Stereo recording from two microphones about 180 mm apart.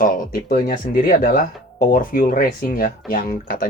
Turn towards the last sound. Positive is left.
turn(degrees=50)  # may be behind; listen again after turning